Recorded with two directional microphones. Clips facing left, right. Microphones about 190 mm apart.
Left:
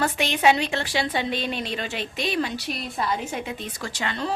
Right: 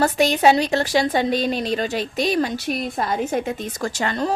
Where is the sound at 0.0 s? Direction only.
40° right (ahead or behind).